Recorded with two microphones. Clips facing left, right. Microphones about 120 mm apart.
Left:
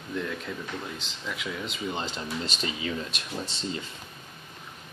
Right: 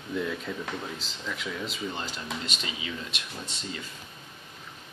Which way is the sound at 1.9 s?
25° left (ahead or behind).